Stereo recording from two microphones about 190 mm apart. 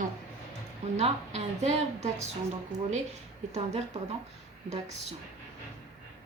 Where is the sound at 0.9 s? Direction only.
35° right (ahead or behind).